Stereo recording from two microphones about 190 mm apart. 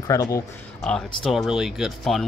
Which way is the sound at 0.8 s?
5° left (ahead or behind).